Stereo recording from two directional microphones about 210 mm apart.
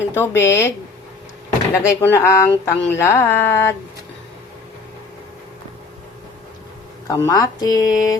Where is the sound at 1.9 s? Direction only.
10° left (ahead or behind).